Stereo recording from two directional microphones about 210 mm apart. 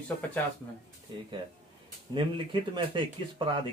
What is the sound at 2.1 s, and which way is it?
A man's voice, 25° right (ahead or behind).